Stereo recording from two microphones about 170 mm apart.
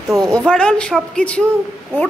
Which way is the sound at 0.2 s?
20° right (ahead or behind).